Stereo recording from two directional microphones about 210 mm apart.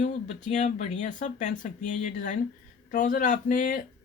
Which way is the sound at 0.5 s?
35° left (ahead or behind).